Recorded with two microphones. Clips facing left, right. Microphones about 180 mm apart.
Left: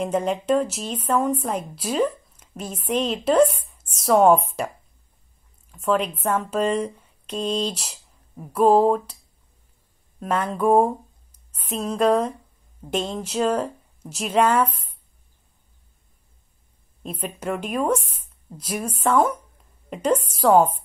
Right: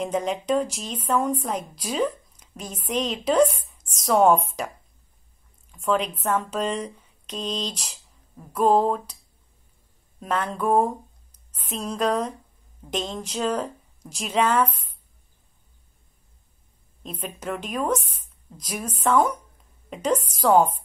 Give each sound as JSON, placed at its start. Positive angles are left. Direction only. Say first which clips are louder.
{"t": 0.0, "sound": "a woman's voice", "louder": "left 2 dB", "side_deg": 5}
{"t": 5.7, "sound": "speech", "louder": "left 2 dB", "side_deg": 5}
{"t": 10.2, "sound": "a woman's voice", "louder": "left 4 dB", "side_deg": 5}
{"t": 17.0, "sound": "a woman's voice", "louder": "left 3 dB", "side_deg": 10}